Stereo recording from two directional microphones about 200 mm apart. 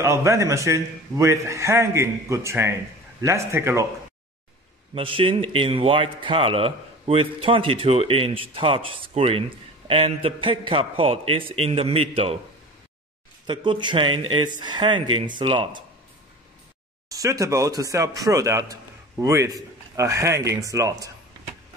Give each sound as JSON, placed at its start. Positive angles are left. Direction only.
{"t": 0.0, "sound": "speech", "side_deg": -15}
{"t": 4.9, "sound": "speech", "side_deg": -25}
{"t": 13.5, "sound": "speech", "side_deg": -20}
{"t": 17.1, "sound": "speech", "side_deg": -15}